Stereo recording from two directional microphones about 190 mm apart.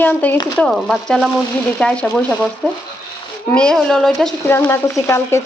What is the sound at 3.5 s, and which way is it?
Speech, 5° left (ahead or behind).